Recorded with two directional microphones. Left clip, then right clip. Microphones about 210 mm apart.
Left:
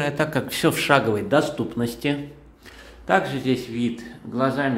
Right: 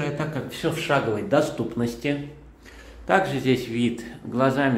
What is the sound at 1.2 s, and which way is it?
Speech, 20° left (ahead or behind).